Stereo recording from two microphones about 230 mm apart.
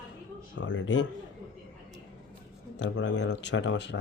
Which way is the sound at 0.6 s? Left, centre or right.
Left.